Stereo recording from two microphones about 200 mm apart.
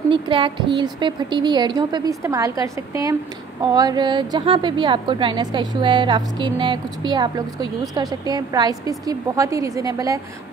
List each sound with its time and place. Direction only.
0.1 s a woman's voice: 25° right (ahead or behind)